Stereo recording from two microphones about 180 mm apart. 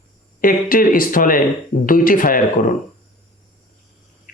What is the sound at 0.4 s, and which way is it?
Speech, 50° left (ahead or behind).